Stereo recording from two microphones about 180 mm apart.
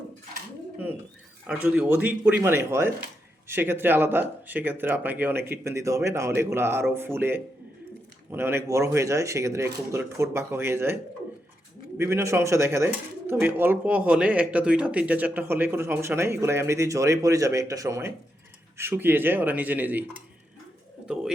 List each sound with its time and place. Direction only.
1.5 s speech: 5° right (ahead or behind)
11.9 s speech: 15° right (ahead or behind)